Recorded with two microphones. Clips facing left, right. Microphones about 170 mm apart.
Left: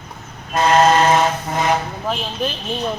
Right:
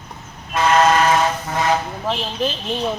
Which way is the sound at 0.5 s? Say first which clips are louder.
Left 1 dB; 35° left (ahead or behind).